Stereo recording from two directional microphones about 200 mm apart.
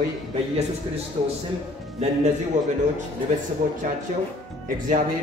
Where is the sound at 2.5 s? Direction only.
35° right (ahead or behind).